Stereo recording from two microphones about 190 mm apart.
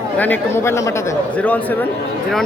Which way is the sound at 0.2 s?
10° left (ahead or behind).